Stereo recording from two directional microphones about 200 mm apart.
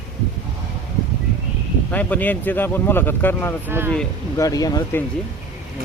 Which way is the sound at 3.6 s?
10° right (ahead or behind).